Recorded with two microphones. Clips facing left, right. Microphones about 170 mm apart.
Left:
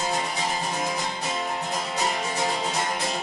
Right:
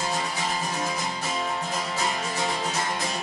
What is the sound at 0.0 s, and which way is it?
Music, 20° left (ahead or behind).